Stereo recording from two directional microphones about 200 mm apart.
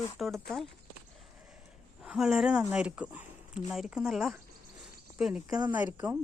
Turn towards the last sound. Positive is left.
turn(degrees=-10)  # may be behind; listen again after turning